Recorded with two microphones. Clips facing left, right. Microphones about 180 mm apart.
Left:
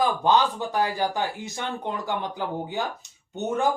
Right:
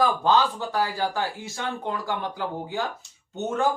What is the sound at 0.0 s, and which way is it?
Speech, 20° left (ahead or behind).